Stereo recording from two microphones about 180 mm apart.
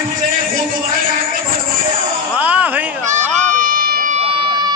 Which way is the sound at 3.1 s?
45° right (ahead or behind).